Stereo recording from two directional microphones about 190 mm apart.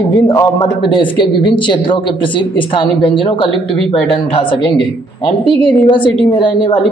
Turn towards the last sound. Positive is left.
turn(degrees=25)  # may be behind; listen again after turning